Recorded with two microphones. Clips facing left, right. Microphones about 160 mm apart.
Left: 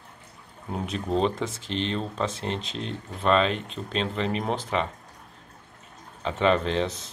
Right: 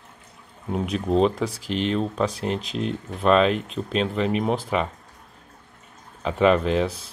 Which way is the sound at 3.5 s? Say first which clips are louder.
Right 5 dB; 25° left (ahead or behind).